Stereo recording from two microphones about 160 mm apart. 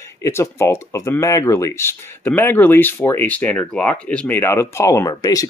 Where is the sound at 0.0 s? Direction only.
15° left (ahead or behind).